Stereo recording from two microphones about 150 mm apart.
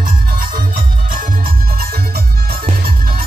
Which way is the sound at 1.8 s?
90° right.